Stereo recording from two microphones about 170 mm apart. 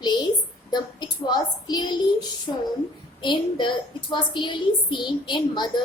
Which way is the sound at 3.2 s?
25° left (ahead or behind).